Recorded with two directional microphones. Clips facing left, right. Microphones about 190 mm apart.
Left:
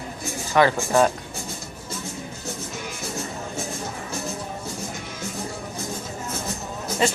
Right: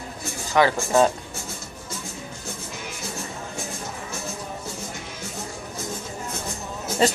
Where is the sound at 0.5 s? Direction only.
15° right (ahead or behind).